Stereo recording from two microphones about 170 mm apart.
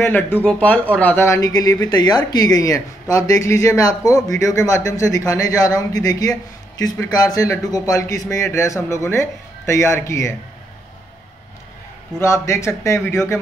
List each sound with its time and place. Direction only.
0.0 s speech: 10° left (ahead or behind)
12.2 s speech: 15° left (ahead or behind)